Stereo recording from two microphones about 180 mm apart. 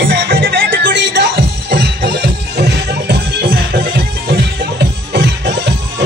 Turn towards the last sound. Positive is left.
turn(degrees=-70)  # may be behind; listen again after turning